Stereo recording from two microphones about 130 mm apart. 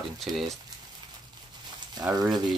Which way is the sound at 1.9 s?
30° right (ahead or behind).